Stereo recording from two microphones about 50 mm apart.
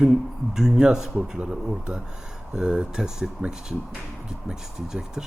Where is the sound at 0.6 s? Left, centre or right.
Centre.